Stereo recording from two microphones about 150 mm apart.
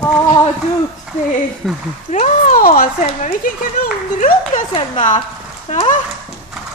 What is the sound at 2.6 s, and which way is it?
Speech, 65° left (ahead or behind).